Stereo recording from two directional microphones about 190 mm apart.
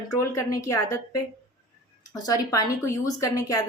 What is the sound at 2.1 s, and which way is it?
A woman's voice, 20° left (ahead or behind).